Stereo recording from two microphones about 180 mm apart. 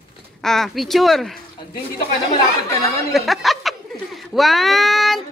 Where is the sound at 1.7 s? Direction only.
55° left (ahead or behind).